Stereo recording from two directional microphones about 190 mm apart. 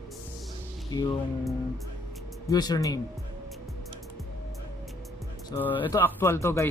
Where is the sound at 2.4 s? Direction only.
20° left (ahead or behind).